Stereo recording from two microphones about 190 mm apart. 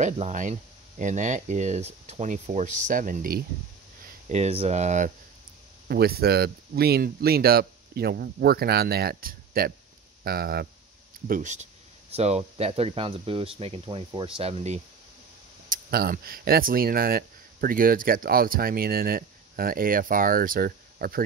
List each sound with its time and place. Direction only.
0.0 s speech: 40° right (ahead or behind)
4.3 s speech: 35° right (ahead or behind)
5.9 s speech: 55° right (ahead or behind)
11.2 s speech: 45° right (ahead or behind)
15.7 s speech: 50° right (ahead or behind)